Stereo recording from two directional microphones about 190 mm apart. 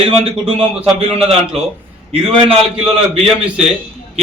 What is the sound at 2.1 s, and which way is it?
Speech, 30° right (ahead or behind).